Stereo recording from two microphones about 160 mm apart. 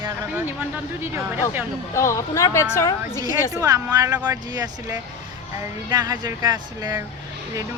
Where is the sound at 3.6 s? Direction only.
25° right (ahead or behind).